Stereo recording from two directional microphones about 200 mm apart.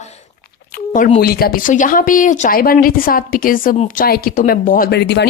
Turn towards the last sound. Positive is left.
turn(degrees=60)  # may be behind; listen again after turning